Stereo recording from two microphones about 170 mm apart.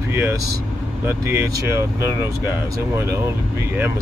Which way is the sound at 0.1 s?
15° right (ahead or behind).